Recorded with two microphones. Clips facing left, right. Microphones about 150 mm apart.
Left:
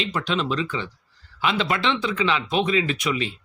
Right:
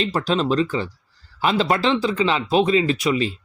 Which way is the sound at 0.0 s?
40° right (ahead or behind).